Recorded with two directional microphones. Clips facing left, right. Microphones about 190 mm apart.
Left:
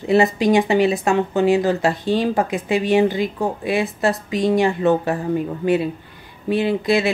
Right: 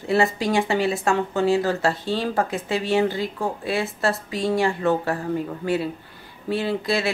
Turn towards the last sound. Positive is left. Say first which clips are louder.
# left 5 dB
turn(degrees=20)  # may be behind; listen again after turning